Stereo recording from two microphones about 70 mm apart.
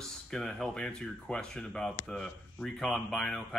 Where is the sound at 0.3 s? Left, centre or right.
Centre.